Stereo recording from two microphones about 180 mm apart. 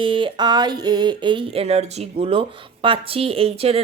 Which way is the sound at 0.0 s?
30° right (ahead or behind).